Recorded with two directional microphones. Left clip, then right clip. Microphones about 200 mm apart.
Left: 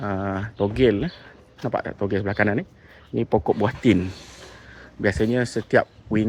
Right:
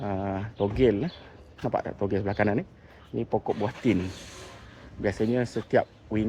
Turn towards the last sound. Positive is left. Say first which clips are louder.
# left 5 dB
turn(degrees=15)  # may be behind; listen again after turning